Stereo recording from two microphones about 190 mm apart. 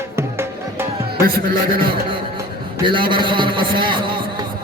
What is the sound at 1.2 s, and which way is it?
Speech, 50° right (ahead or behind).